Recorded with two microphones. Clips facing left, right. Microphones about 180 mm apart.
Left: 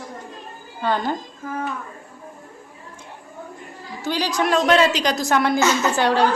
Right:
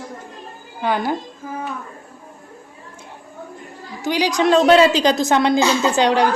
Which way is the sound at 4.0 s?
15° right (ahead or behind).